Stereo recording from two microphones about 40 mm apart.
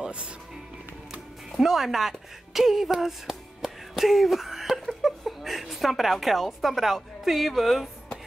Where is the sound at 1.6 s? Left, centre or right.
Centre.